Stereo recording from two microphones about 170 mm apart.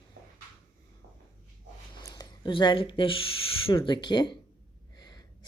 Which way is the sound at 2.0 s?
25° left (ahead or behind).